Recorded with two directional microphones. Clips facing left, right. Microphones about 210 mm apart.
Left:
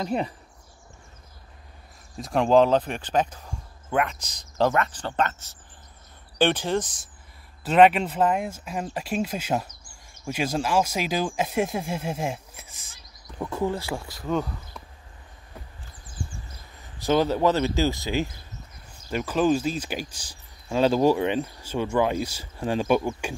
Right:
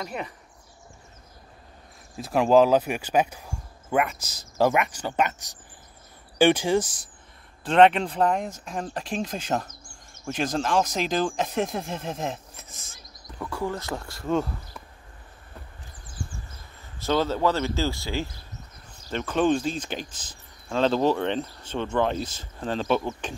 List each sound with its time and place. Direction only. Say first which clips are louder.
0.0 s speech: left 6 dB; 30° left (ahead or behind)
2.1 s speech: even; 5° right (ahead or behind)
7.6 s speech: even; 5° left (ahead or behind); by 13.7 s 20° left (ahead or behind)
13.7 s speech: left 1 dB; 10° left (ahead or behind)
17.0 s speech: left 2 dB; 15° left (ahead or behind)